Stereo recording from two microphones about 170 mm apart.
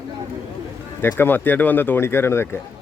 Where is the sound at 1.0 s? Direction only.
15° left (ahead or behind).